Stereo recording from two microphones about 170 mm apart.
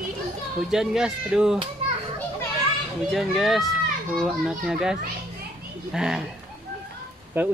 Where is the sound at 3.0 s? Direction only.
Centre (ahead or behind).